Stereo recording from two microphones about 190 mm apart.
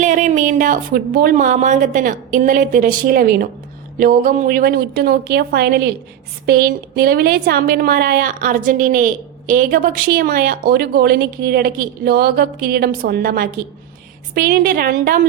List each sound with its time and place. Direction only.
0.0 s a woman's voice: 40° right (ahead or behind)